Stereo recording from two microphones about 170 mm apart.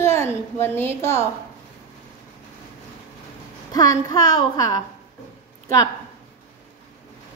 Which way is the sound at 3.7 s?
20° left (ahead or behind).